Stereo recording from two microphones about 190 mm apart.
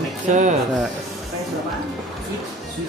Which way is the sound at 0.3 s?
40° right (ahead or behind).